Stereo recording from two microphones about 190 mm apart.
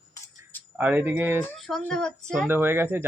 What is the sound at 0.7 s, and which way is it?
Speech, 10° right (ahead or behind).